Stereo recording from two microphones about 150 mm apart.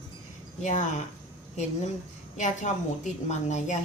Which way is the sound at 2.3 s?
55° left (ahead or behind).